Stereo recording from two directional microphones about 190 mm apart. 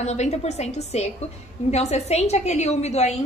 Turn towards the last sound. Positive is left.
turn(degrees=35)  # may be behind; listen again after turning